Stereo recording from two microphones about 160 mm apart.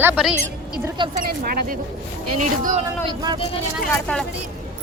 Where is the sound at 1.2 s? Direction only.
70° right (ahead or behind).